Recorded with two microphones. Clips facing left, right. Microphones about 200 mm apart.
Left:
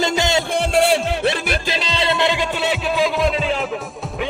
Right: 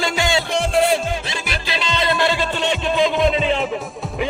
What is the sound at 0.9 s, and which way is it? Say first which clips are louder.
Music: left 4 dB; 60° left (ahead or behind).